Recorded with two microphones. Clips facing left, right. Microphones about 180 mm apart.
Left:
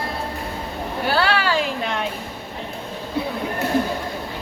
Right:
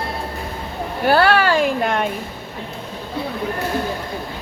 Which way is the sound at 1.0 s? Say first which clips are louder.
Right 6 dB; 50° right (ahead or behind).